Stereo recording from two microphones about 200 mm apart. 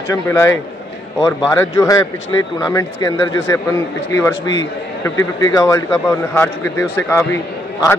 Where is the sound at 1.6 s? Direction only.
15° left (ahead or behind).